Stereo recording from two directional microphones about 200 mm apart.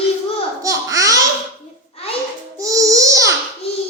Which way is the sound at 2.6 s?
15° right (ahead or behind).